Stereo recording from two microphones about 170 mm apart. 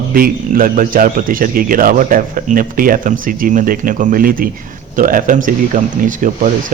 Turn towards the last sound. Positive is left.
turn(degrees=-50)  # may be behind; listen again after turning